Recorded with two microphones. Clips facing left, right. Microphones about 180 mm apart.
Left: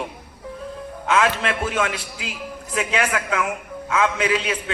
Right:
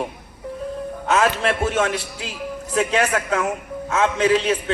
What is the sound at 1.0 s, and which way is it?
A man's voice, 40° right (ahead or behind).